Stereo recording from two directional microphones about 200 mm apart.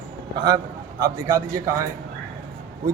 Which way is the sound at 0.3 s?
20° right (ahead or behind).